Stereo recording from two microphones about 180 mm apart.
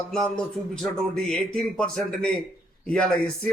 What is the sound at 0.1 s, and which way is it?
A man's voice, 5° left (ahead or behind).